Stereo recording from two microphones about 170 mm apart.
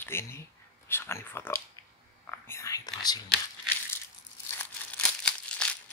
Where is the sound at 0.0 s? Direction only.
15° left (ahead or behind).